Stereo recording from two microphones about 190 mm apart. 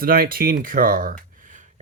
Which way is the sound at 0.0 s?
50° right (ahead or behind).